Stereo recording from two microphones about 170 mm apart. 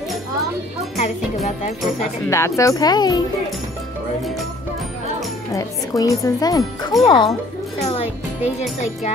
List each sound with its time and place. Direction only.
0.9 s speech: 40° left (ahead or behind)
2.2 s speech: 15° left (ahead or behind)
5.5 s speech: 20° left (ahead or behind)